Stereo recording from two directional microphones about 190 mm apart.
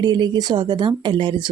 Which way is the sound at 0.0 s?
20° right (ahead or behind).